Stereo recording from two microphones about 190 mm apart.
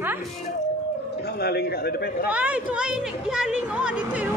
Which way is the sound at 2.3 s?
5° right (ahead or behind).